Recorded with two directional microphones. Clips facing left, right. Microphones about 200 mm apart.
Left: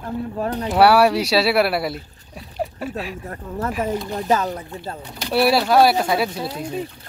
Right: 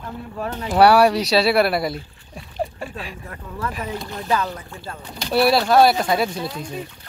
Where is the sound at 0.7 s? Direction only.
5° left (ahead or behind).